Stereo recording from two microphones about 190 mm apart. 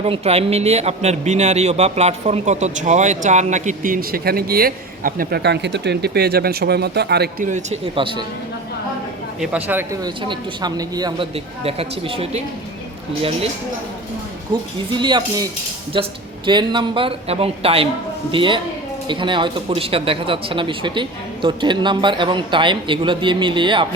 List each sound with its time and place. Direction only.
0.0 s speech: 30° right (ahead or behind)
7.9 s speech: 25° right (ahead or behind)
9.4 s speech: 10° right (ahead or behind)
11.6 s speech: 30° right (ahead or behind)
14.5 s speech: 25° right (ahead or behind)